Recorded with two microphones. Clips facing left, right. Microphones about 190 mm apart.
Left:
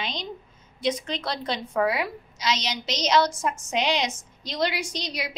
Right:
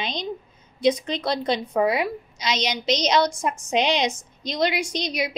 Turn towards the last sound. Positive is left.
turn(degrees=-15)  # may be behind; listen again after turning